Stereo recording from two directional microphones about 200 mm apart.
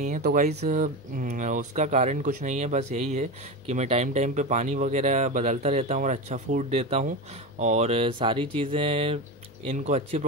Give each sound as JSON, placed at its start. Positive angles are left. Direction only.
{"t": 0.0, "sound": "speech", "side_deg": -40}